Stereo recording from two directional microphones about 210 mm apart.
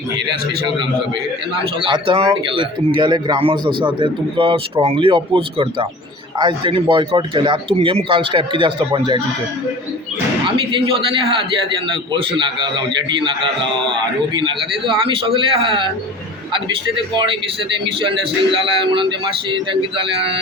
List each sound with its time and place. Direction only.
1.5 s a man's voice: 25° right (ahead or behind)
10.7 s a man's voice: 25° right (ahead or behind)
12.4 s a man's voice: 20° right (ahead or behind)
18.0 s a man's voice: 25° right (ahead or behind)